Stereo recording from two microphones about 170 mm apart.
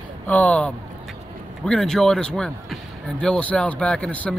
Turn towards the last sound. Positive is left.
turn(degrees=5)  # may be behind; listen again after turning